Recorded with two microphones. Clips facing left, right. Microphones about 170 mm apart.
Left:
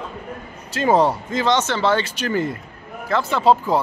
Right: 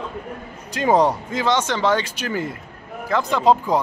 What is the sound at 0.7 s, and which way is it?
Speech, 15° right (ahead or behind).